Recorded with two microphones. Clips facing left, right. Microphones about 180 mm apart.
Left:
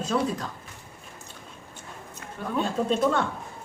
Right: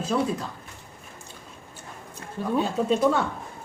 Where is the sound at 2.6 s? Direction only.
5° right (ahead or behind).